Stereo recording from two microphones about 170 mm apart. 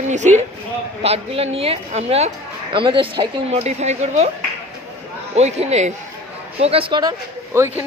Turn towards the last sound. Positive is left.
turn(degrees=-15)  # may be behind; listen again after turning